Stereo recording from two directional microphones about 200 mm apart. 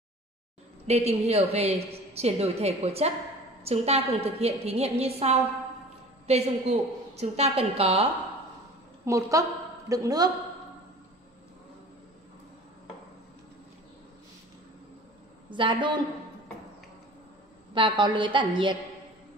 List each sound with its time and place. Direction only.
0.8 s a woman's voice: 30° right (ahead or behind)
9.0 s a woman's voice: 15° right (ahead or behind)
15.5 s a woman's voice: 25° right (ahead or behind)
17.7 s a woman's voice: 25° right (ahead or behind)